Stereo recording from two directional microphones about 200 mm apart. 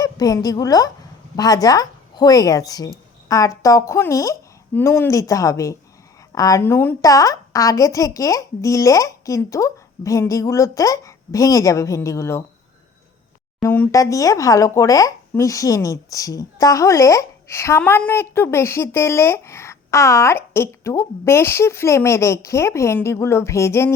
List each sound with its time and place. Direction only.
0.0 s a woman's voice: 20° left (ahead or behind)
13.6 s speech: 15° left (ahead or behind)